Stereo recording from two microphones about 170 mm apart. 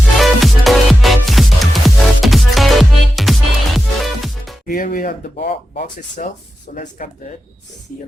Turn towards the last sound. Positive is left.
turn(degrees=50)  # may be behind; listen again after turning